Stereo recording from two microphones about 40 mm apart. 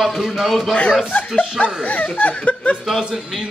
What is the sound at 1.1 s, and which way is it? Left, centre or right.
Speech, left.